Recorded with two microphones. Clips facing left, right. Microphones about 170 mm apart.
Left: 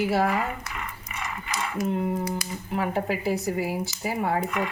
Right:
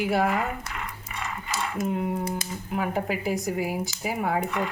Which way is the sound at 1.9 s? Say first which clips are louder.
Left 2 dB; 5° right (ahead or behind).